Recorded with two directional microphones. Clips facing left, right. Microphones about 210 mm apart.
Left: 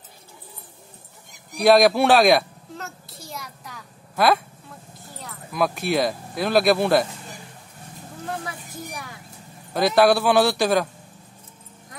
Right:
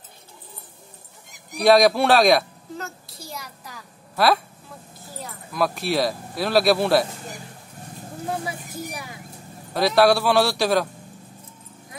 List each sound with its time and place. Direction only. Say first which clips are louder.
1.6 s a sound: even; centre (ahead or behind)
5.2 s speech: even; centre (ahead or behind)
9.8 s a man's voice: even; centre (ahead or behind)